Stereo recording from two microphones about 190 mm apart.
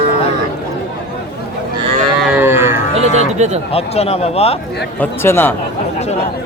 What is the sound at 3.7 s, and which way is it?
Speech, 30° left (ahead or behind).